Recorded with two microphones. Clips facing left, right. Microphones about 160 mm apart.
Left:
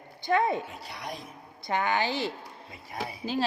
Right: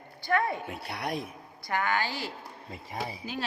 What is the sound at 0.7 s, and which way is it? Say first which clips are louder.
Speech: right 5 dB; 65° right (ahead or behind).